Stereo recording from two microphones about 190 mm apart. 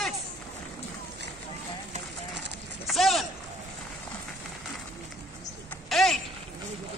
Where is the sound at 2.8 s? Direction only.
Centre (ahead or behind).